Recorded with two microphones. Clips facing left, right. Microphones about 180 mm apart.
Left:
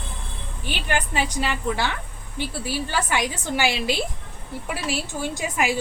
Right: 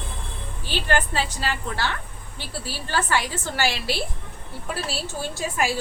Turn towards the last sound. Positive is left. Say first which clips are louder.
# left 1 dB
turn(degrees=15)  # may be behind; listen again after turning